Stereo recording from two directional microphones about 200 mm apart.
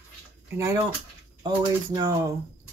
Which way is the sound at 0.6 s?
15° right (ahead or behind).